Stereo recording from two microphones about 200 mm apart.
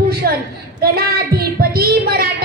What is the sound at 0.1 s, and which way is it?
Child singing, 50° right (ahead or behind).